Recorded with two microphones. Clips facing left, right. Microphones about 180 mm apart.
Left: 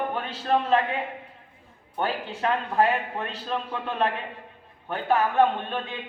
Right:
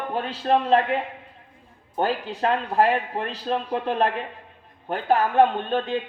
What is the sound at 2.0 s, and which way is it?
Speech, 35° right (ahead or behind).